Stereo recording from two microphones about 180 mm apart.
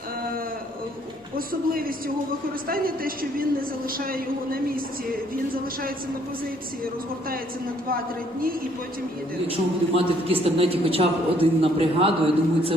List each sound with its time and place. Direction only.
1.4 s speech: 55° right (ahead or behind)
9.5 s a man's voice: 30° right (ahead or behind)